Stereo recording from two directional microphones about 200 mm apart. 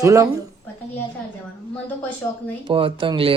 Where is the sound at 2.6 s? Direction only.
25° right (ahead or behind).